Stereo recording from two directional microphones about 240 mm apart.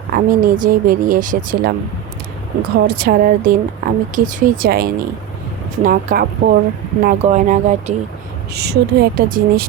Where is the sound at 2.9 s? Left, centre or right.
Right.